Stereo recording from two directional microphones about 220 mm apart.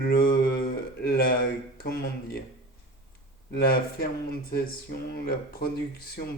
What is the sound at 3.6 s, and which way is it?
Speech, 40° left (ahead or behind).